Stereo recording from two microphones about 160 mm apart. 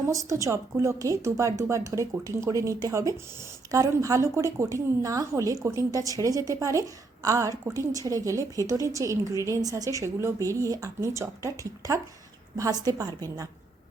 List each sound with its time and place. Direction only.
0.1 s a woman's voice: 20° right (ahead or behind)